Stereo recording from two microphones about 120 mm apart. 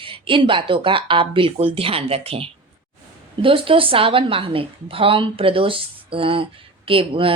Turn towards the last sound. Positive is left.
turn(degrees=-50)  # may be behind; listen again after turning